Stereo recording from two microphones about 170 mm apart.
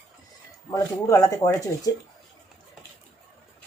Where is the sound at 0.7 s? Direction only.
20° left (ahead or behind).